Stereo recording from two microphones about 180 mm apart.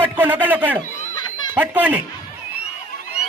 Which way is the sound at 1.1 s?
25° left (ahead or behind).